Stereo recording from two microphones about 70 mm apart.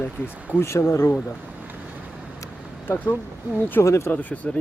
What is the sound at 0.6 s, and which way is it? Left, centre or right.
Speech, left.